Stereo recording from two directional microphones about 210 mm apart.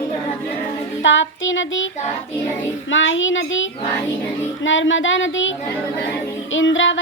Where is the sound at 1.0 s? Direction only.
65° left (ahead or behind).